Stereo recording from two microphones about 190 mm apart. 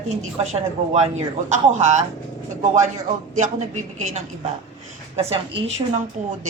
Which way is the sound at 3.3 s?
40° right (ahead or behind).